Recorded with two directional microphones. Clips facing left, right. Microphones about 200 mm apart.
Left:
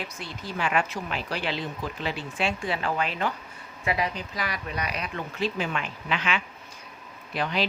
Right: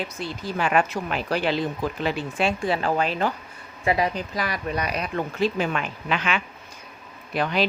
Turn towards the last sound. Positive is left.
turn(degrees=-50)  # may be behind; listen again after turning